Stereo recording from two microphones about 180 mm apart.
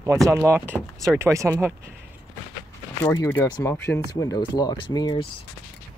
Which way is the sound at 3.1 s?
15° left (ahead or behind).